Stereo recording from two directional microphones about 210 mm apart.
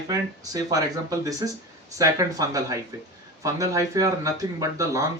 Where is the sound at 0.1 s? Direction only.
15° right (ahead or behind).